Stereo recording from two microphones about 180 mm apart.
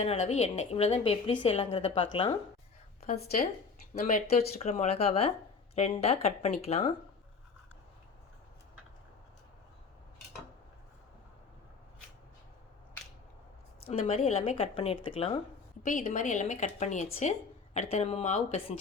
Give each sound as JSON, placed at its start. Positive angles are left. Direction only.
{"t": 0.0, "sound": "a woman's voice", "side_deg": 35}
{"t": 3.9, "sound": "a woman's voice", "side_deg": 45}
{"t": 13.8, "sound": "a woman's voice", "side_deg": 35}
{"t": 15.8, "sound": "a woman's voice", "side_deg": 45}